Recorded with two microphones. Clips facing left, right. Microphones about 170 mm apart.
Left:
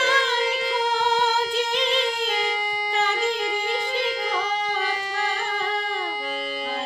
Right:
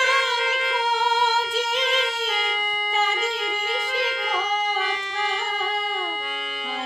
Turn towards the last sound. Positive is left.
turn(degrees=35)  # may be behind; listen again after turning